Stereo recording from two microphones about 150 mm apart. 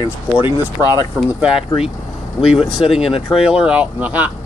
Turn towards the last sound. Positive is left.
turn(degrees=-10)  # may be behind; listen again after turning